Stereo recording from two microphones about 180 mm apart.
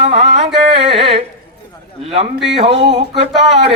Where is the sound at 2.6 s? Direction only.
35° right (ahead or behind).